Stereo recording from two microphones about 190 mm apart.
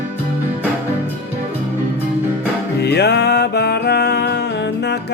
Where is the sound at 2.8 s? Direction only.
60° left (ahead or behind).